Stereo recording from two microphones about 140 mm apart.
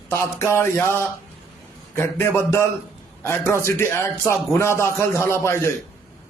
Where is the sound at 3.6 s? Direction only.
20° left (ahead or behind).